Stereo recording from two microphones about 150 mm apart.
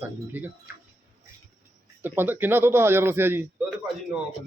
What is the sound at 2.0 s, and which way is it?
Speech, 15° right (ahead or behind).